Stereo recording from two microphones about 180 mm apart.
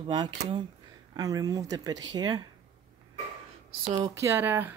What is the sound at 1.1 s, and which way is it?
Speech, 20° right (ahead or behind).